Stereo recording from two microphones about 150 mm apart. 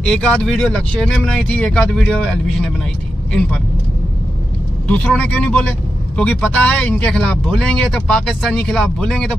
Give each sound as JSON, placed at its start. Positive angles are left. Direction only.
{"t": 0.1, "sound": "speech", "side_deg": 5}
{"t": 4.8, "sound": "speech", "side_deg": 10}